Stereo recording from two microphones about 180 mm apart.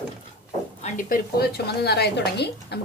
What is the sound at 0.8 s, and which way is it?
A woman's voice, 45° left (ahead or behind).